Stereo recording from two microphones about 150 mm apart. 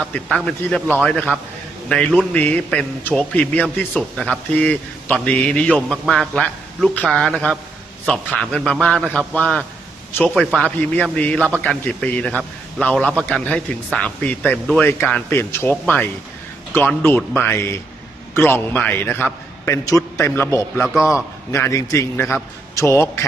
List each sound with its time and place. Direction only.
0.0 s a man's voice: 5° left (ahead or behind)